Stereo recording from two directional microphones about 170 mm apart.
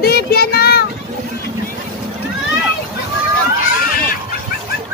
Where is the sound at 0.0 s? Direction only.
65° left (ahead or behind).